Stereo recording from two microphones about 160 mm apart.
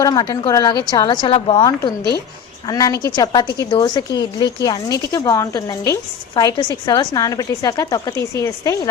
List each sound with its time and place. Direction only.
0.0 s a woman's voice: 25° left (ahead or behind)